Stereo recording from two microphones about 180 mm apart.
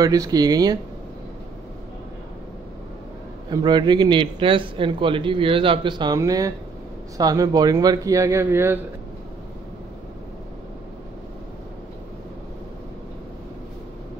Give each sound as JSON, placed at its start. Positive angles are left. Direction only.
{"t": 0.0, "sound": "a man's voice", "side_deg": -20}
{"t": 3.4, "sound": "a man's voice", "side_deg": -25}